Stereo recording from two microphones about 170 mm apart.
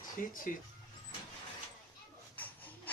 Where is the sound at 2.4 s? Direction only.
10° left (ahead or behind).